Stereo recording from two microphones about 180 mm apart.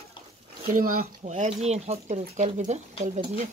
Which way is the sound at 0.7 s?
50° right (ahead or behind).